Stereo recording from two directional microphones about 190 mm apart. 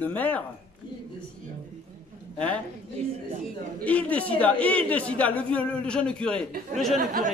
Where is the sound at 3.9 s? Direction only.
5° left (ahead or behind).